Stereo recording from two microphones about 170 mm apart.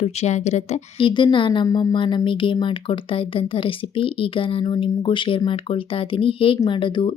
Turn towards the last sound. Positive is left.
turn(degrees=30)  # may be behind; listen again after turning